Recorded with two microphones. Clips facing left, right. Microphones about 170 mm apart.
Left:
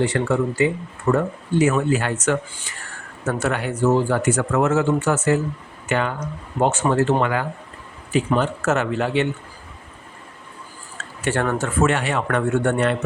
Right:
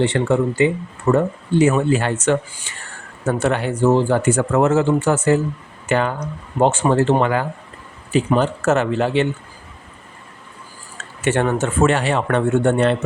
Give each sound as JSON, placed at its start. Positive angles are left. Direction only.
{"t": 0.0, "sound": "a man's voice", "side_deg": -25}
{"t": 11.2, "sound": "a man's voice", "side_deg": -20}